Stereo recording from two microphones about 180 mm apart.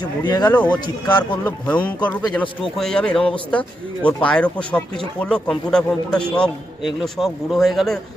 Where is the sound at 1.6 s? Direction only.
5° left (ahead or behind).